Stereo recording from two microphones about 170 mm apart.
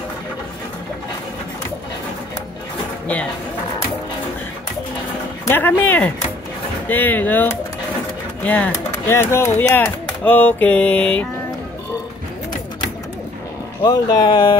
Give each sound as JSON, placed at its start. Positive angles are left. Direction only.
{"t": 5.5, "sound": "speech", "side_deg": 10}
{"t": 13.8, "sound": "speech", "side_deg": 25}